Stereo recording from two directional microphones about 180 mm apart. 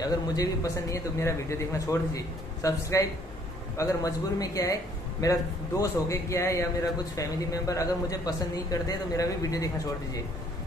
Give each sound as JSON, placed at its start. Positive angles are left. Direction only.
{"t": 0.0, "sound": "a man's voice", "side_deg": 20}